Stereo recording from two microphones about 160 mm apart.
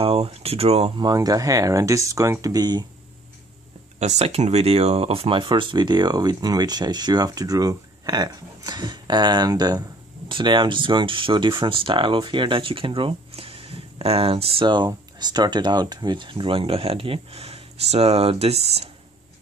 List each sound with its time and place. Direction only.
0.0 s speech: 40° right (ahead or behind)
0.9 s speech: 25° right (ahead or behind)
4.0 s speech: 45° right (ahead or behind)